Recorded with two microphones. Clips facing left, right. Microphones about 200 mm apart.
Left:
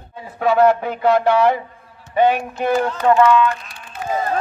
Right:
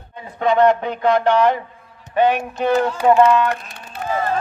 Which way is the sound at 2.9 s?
10° right (ahead or behind).